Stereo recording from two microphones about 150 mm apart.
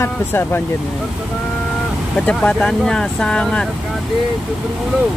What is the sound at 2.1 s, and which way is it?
Speech, 5° left (ahead or behind).